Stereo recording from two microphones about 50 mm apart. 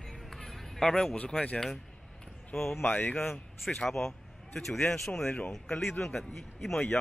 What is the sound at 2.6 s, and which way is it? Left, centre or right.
Speech, left.